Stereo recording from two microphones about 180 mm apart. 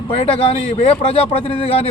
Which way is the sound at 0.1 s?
30° left (ahead or behind).